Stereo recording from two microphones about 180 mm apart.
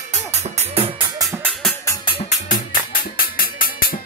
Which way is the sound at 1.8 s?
15° left (ahead or behind).